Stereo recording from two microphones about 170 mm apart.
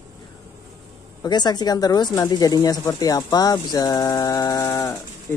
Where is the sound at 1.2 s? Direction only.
25° left (ahead or behind).